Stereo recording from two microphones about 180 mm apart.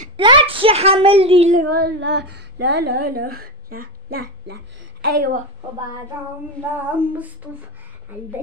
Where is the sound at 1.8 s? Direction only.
70° right (ahead or behind); by 5.4 s 55° right (ahead or behind).